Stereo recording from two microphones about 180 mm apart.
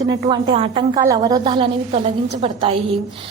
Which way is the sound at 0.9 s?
20° right (ahead or behind).